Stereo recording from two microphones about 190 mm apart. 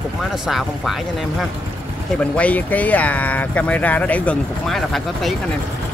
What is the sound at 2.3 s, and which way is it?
Speech, 10° left (ahead or behind).